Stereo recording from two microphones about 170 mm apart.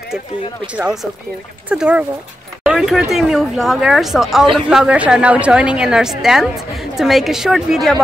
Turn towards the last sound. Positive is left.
turn(degrees=0)  # may be behind; listen again after turning